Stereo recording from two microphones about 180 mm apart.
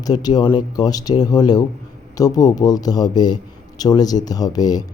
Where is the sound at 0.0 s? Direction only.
20° left (ahead or behind).